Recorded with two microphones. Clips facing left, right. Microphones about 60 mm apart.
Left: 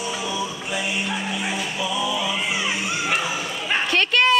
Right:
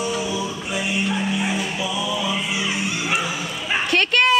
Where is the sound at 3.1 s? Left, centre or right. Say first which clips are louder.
Even; centre.